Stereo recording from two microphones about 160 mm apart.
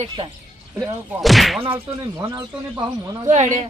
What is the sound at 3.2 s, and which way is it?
Speech, 45° right (ahead or behind).